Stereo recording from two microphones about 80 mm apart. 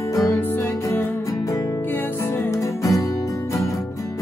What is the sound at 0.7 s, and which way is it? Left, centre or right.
Music, left.